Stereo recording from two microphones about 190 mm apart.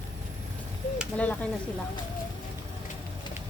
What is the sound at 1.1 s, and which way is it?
Speech, 5° left (ahead or behind).